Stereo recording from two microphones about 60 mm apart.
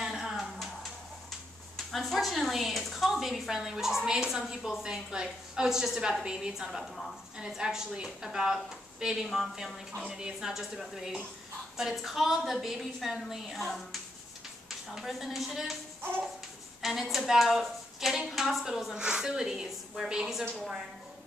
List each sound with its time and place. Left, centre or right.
0.0 s a sound: centre
1.9 s a woman's voice: centre
9.9 s a woman's voice: centre
14.9 s a woman's voice: centre
16.0 s music: right
16.8 s a woman's voice: centre